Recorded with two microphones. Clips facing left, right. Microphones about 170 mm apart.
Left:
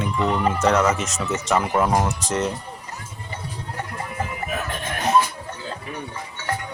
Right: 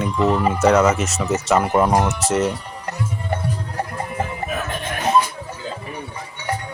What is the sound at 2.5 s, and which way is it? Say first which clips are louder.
Music: right 4 dB; 70° right (ahead or behind).